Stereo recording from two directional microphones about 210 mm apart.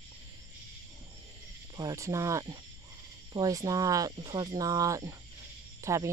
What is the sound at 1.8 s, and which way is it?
Speech, 15° right (ahead or behind).